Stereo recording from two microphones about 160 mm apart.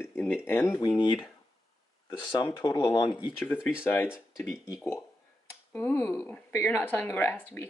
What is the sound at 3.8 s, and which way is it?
Speech, 15° left (ahead or behind).